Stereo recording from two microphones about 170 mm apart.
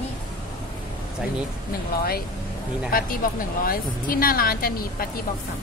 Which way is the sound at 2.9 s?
55° left (ahead or behind).